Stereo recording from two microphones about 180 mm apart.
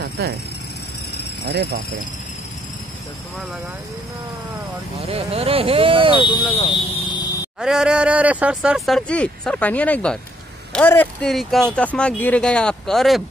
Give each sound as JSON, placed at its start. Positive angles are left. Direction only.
{"t": 1.5, "sound": "speech", "side_deg": -65}
{"t": 5.0, "sound": "speech", "side_deg": -35}
{"t": 6.2, "sound": "speech", "side_deg": 25}
{"t": 7.6, "sound": "speech", "side_deg": -5}